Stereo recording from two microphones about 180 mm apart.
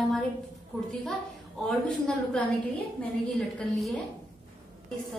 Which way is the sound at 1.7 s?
5° left (ahead or behind).